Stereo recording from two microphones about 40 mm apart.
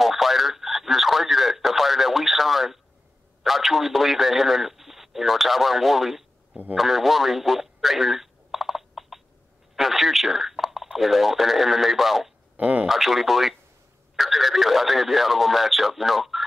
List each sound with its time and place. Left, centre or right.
0.0 s radio: centre
3.4 s a man's voice: centre
6.8 s telephone: centre
9.8 s speech: centre
12.5 s speech: right
12.8 s a man's voice: centre